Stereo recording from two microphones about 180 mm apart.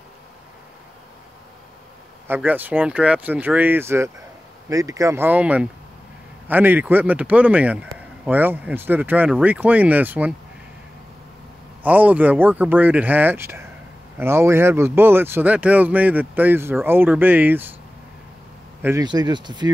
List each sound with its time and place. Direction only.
2.2 s a man's voice: 10° right (ahead or behind)
11.8 s a man's voice: 10° right (ahead or behind)
18.8 s speech: 15° right (ahead or behind)
19.0 s speech: 25° right (ahead or behind)